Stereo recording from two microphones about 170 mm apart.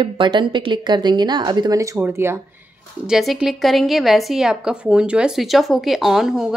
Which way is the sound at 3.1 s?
Centre (ahead or behind).